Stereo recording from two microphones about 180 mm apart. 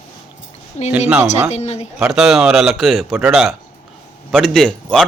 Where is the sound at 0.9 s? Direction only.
10° right (ahead or behind).